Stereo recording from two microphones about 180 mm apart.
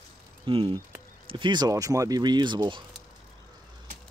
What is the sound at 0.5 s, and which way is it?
Speech, 30° right (ahead or behind).